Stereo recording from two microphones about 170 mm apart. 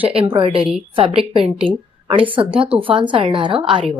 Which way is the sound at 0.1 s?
35° right (ahead or behind).